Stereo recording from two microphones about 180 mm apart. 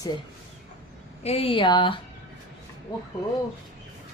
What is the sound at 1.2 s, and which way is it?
Speech, 30° left (ahead or behind).